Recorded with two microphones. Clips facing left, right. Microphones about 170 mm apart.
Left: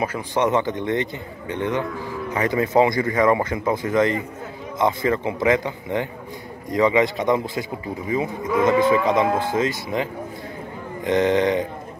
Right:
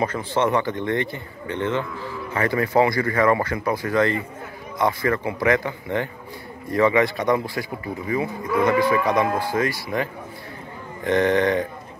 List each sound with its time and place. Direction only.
0.0 s a man's voice: 10° left (ahead or behind)
4.7 s moo: 20° left (ahead or behind)
11.1 s a man's voice: 20° left (ahead or behind)